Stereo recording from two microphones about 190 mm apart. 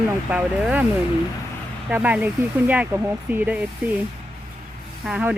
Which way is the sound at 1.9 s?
5° right (ahead or behind).